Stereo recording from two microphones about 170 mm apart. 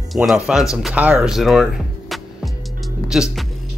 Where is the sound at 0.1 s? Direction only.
Centre (ahead or behind).